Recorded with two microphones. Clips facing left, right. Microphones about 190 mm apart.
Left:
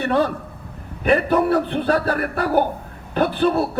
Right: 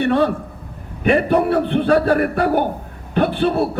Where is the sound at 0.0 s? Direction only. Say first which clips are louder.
Right 3 dB; 40° left (ahead or behind).